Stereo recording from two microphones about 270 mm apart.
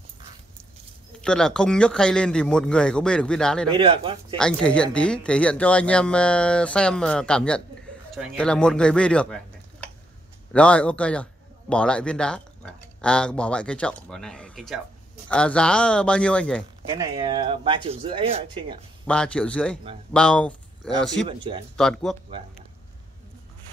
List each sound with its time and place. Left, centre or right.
1.2 s speech: centre
3.7 s speech: centre
4.4 s speech: centre
16.9 s speech: centre
19.0 s speech: centre
21.3 s speech: centre
21.7 s speech: centre